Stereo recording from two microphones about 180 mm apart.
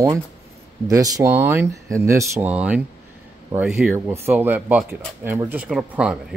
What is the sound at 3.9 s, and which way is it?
Speech, 15° right (ahead or behind).